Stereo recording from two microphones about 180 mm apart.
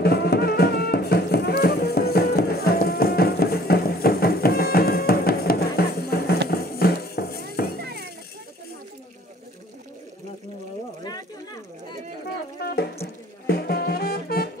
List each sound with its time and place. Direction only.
0.0 s music: 60° left (ahead or behind)
7.8 s children playing: 65° right (ahead or behind)
12.6 s a sound: 60° left (ahead or behind)
13.0 s music: 60° left (ahead or behind)